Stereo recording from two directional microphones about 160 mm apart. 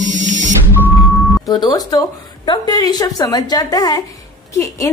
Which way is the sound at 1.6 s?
25° left (ahead or behind).